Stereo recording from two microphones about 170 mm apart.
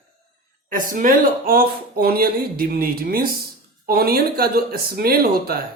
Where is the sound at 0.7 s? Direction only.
50° right (ahead or behind).